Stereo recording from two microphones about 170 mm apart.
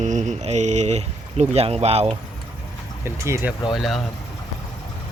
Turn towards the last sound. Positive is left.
turn(degrees=0)  # may be behind; listen again after turning